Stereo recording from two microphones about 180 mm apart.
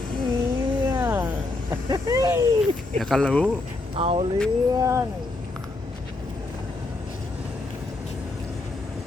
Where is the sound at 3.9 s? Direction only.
30° right (ahead or behind).